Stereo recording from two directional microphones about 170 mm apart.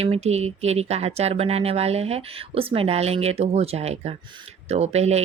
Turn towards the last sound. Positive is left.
turn(degrees=-40)  # may be behind; listen again after turning